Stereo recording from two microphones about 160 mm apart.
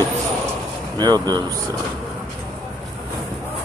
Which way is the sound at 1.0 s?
25° right (ahead or behind).